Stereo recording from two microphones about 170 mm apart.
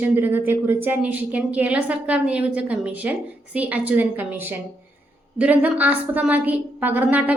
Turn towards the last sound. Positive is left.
turn(degrees=-10)  # may be behind; listen again after turning